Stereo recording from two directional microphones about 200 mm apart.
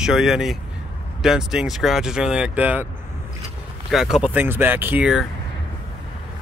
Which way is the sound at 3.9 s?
Centre (ahead or behind).